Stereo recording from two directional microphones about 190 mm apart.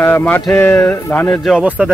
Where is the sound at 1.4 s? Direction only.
Centre (ahead or behind).